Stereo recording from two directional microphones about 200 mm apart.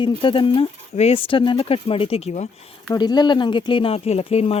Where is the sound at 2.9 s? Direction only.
20° left (ahead or behind).